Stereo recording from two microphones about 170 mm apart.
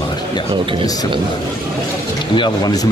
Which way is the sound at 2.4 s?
25° left (ahead or behind).